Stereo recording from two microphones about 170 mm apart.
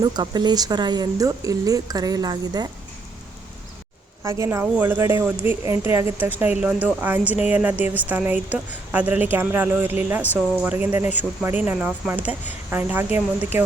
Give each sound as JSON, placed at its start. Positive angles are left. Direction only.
{"t": 0.0, "sound": "speech", "side_deg": -25}
{"t": 4.2, "sound": "speech", "side_deg": -15}